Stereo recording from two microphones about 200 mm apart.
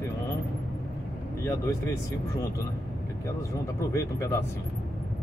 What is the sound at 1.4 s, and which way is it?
Speech, 15° left (ahead or behind).